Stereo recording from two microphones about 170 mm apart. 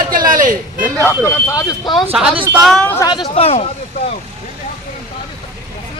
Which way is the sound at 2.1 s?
5° right (ahead or behind).